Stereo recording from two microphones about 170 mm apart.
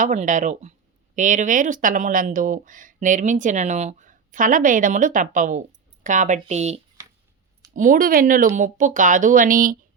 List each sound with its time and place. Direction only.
0.0 s speech: 45° right (ahead or behind)
7.8 s speech: 55° right (ahead or behind)